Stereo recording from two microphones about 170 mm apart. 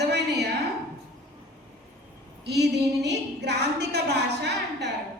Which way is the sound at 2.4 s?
80° right.